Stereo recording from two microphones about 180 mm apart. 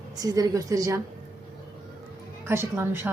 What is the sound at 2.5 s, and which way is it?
Speech, 10° right (ahead or behind).